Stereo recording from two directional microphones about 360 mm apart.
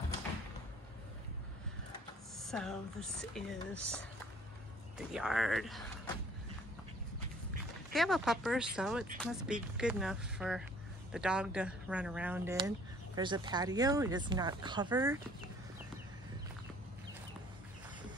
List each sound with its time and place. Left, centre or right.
2.3 s speech: centre
7.9 s speech: centre